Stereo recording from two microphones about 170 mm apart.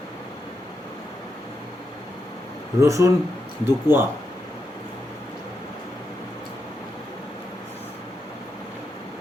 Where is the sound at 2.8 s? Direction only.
15° right (ahead or behind).